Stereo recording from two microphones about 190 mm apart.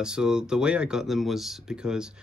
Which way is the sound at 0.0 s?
5° right (ahead or behind).